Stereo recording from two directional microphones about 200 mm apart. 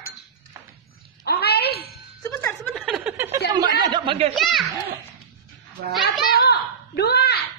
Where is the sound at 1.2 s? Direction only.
55° left (ahead or behind).